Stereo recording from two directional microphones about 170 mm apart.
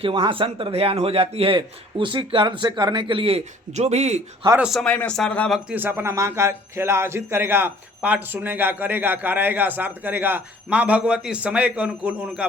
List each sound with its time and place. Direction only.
0.0 s speech: 30° right (ahead or behind)
4.5 s a man's voice: 5° right (ahead or behind)
4.8 s a man's voice: 5° left (ahead or behind)
5.5 s speech: 10° right (ahead or behind)